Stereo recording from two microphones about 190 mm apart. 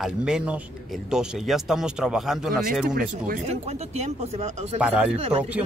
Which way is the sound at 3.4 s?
35° right (ahead or behind).